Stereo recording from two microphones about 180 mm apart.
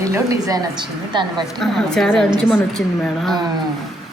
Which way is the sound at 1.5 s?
Centre (ahead or behind).